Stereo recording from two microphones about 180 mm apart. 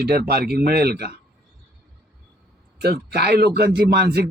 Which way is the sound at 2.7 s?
65° right (ahead or behind).